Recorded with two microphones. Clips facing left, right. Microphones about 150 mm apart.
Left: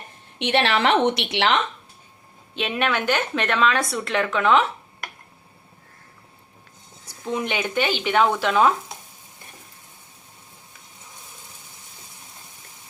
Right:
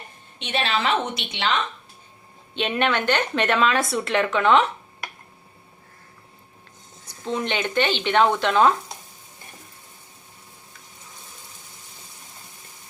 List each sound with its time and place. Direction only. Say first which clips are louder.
0.3 s a woman's voice: left 4 dB; 75° left (ahead or behind)
2.6 s a woman's voice: right 1 dB; centre (ahead or behind)
7.0 s a woman's voice: even; 10° left (ahead or behind)